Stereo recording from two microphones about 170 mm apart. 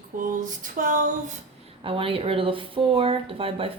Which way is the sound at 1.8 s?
30° right (ahead or behind).